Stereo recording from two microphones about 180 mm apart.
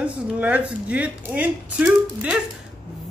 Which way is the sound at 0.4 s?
5° right (ahead or behind).